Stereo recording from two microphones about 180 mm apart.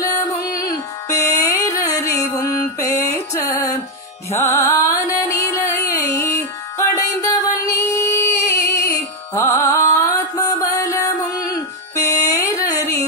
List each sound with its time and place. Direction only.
0.5 s carnatic music: 20° left (ahead or behind)
4.3 s music: 15° left (ahead or behind)